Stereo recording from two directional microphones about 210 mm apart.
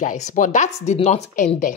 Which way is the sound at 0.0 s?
35° left (ahead or behind).